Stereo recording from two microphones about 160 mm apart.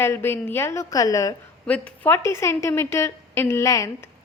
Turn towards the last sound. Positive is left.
turn(degrees=20)  # may be behind; listen again after turning